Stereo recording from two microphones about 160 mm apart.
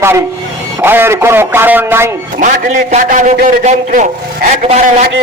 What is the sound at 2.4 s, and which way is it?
A man's voice, 50° right (ahead or behind).